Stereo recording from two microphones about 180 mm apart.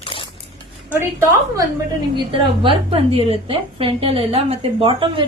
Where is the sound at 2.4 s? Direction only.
30° right (ahead or behind).